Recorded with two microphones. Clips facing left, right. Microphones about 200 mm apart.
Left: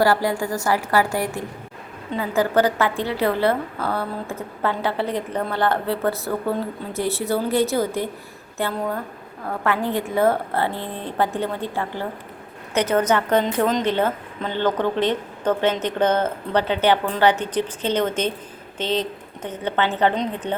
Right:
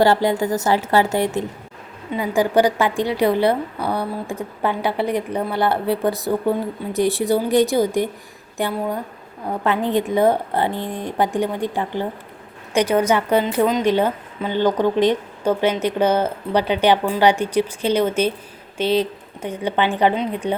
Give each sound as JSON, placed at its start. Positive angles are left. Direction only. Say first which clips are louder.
{"t": 0.0, "sound": "a woman's voice", "louder": "right 3 dB", "side_deg": -20}